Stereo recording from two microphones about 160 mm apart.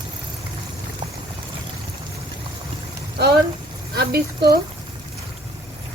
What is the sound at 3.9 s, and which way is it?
Speech, 80° right.